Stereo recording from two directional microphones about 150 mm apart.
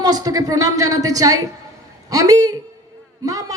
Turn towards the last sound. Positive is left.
turn(degrees=-20)  # may be behind; listen again after turning